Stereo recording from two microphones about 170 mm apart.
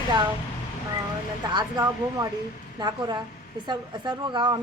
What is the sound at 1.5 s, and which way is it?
Speech, 25° right (ahead or behind).